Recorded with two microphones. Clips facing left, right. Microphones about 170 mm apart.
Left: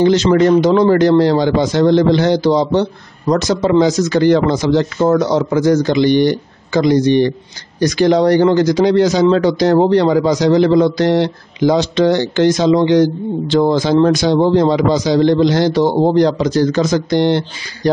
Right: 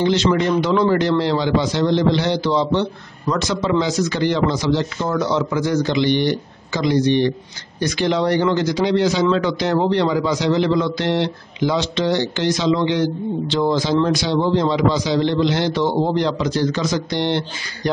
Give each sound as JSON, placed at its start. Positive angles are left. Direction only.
{"t": 0.0, "sound": "a man's voice", "side_deg": 45}